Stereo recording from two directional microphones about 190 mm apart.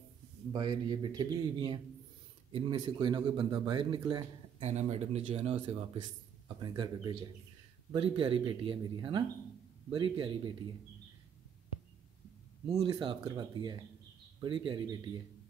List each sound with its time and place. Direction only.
0.5 s speech: 25° right (ahead or behind)
12.6 s speech: 20° right (ahead or behind)